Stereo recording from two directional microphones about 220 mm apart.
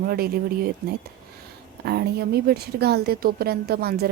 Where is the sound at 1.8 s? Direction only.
45° right (ahead or behind).